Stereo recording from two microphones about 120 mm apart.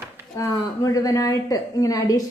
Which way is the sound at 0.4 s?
30° left (ahead or behind).